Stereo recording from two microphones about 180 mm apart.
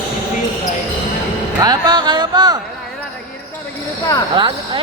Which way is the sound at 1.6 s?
20° right (ahead or behind).